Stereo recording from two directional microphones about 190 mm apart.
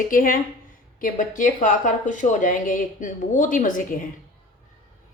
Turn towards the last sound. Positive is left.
turn(degrees=45)  # may be behind; listen again after turning